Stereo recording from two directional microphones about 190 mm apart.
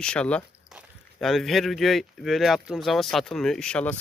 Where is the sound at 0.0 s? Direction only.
5° left (ahead or behind).